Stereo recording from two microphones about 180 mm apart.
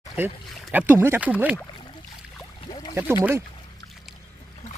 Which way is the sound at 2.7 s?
25° left (ahead or behind).